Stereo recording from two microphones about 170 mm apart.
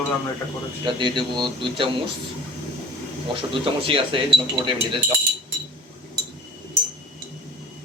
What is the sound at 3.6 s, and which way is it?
Speech, 30° right (ahead or behind).